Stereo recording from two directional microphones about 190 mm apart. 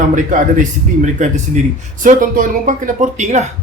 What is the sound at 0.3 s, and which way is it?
Speech, 45° right (ahead or behind).